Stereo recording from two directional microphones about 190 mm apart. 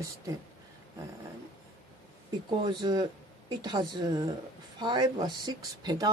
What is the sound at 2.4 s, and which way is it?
Speech, 20° right (ahead or behind).